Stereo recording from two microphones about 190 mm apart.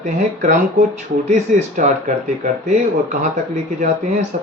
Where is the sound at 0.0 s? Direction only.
40° right (ahead or behind).